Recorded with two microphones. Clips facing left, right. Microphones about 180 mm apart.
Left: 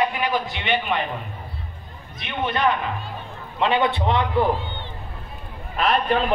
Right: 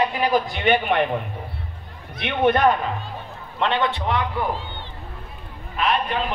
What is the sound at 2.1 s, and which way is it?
Speech, 60° right (ahead or behind).